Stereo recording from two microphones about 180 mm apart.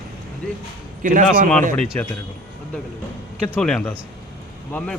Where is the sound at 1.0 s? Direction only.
45° right (ahead or behind).